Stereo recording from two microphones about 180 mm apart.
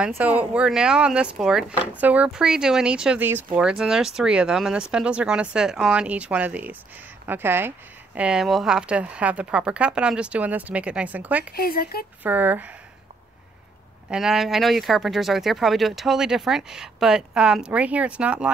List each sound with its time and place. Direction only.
0.2 s speech: 10° right (ahead or behind)
11.5 s speech: 55° left (ahead or behind)
12.2 s speech: 10° right (ahead or behind)
14.0 s speech: 5° right (ahead or behind)